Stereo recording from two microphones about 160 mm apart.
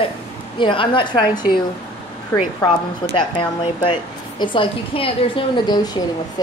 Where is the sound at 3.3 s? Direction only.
30° left (ahead or behind).